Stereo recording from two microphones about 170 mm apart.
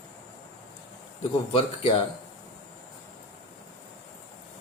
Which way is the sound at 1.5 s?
30° left (ahead or behind).